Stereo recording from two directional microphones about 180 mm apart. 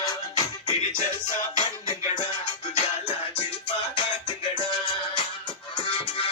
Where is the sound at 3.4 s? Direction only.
30° left (ahead or behind).